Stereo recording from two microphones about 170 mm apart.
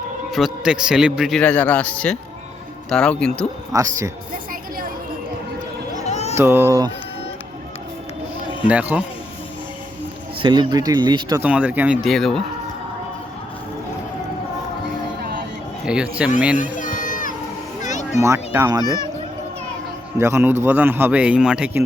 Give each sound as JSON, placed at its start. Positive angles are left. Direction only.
{"t": 0.3, "sound": "a man's voice", "side_deg": 0}
{"t": 3.7, "sound": "speech", "side_deg": -20}
{"t": 5.9, "sound": "a sound", "side_deg": 40}
{"t": 6.3, "sound": "a man's voice", "side_deg": -15}
{"t": 8.6, "sound": "a man's voice", "side_deg": -10}
{"t": 10.4, "sound": "speech", "side_deg": -25}
{"t": 11.3, "sound": "a man's voice", "side_deg": -10}
{"t": 12.0, "sound": "a man's voice", "side_deg": 0}
{"t": 15.9, "sound": "a man's voice", "side_deg": -5}
{"t": 16.7, "sound": "crowd", "side_deg": 50}
{"t": 17.8, "sound": "a sound", "side_deg": 45}
{"t": 18.2, "sound": "speech", "side_deg": -15}
{"t": 20.1, "sound": "a man's voice", "side_deg": -15}